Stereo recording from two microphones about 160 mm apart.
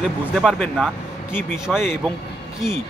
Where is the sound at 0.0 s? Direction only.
Centre (ahead or behind).